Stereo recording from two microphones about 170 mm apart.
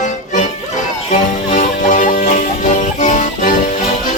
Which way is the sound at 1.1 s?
50° left (ahead or behind).